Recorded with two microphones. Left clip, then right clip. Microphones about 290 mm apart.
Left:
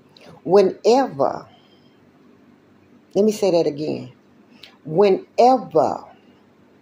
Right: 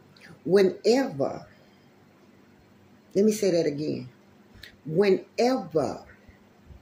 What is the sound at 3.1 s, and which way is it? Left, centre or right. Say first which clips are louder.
Speech: left 6 dB; centre.